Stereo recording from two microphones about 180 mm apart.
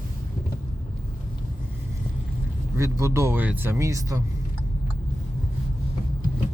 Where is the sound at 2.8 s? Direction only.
15° right (ahead or behind).